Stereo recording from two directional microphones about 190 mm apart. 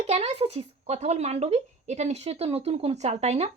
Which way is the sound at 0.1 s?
30° right (ahead or behind).